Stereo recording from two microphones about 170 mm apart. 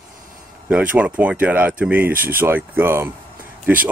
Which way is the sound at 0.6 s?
10° right (ahead or behind).